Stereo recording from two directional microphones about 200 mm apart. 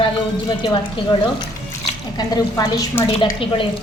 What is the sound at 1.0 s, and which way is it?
Speech, 25° left (ahead or behind).